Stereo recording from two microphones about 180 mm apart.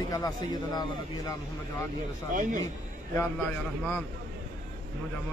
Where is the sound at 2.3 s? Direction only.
45° right (ahead or behind).